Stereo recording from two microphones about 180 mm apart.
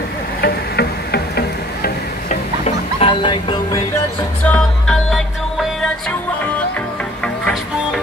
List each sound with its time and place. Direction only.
0.4 s a sound: 65° left (ahead or behind)
2.2 s music: 35° left (ahead or behind)
4.5 s music: 5° left (ahead or behind)